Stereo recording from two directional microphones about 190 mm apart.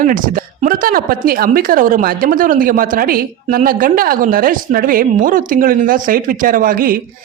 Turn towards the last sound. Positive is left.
turn(degrees=-50)  # may be behind; listen again after turning